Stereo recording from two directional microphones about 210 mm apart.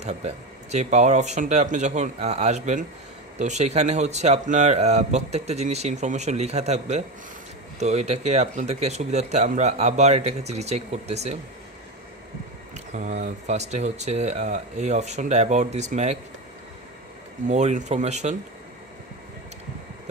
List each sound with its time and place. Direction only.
0.0 s speech: 30° right (ahead or behind)
12.7 s speech: 35° right (ahead or behind)
17.5 s speech: 35° right (ahead or behind)